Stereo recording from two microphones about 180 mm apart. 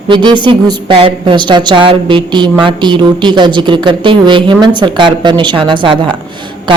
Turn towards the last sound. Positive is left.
turn(degrees=-25)  # may be behind; listen again after turning